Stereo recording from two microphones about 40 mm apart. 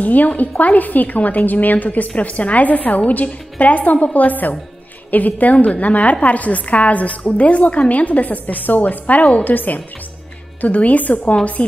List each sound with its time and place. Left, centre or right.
0.0 s a woman's voice: left